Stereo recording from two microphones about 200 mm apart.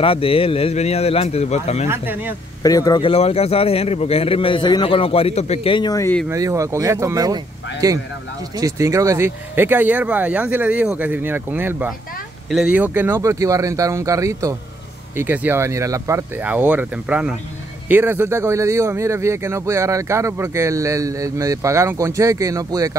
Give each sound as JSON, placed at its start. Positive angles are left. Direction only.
{"t": 0.0, "sound": "a man's voice", "side_deg": 30}
{"t": 1.9, "sound": "speech", "side_deg": -10}
{"t": 2.6, "sound": "a man's voice", "side_deg": 20}
{"t": 6.2, "sound": "speech", "side_deg": -15}